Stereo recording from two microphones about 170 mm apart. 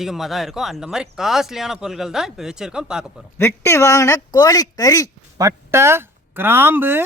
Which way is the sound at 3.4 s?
15° left (ahead or behind).